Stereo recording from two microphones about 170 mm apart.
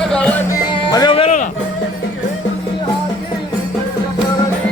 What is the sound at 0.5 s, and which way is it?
Music, 25° left (ahead or behind).